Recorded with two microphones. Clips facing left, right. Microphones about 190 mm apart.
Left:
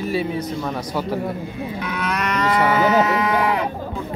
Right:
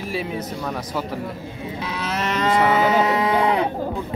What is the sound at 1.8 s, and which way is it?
Moo, 25° right (ahead or behind).